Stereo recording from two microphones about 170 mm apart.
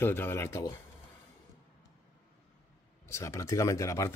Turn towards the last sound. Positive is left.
turn(degrees=20)  # may be behind; listen again after turning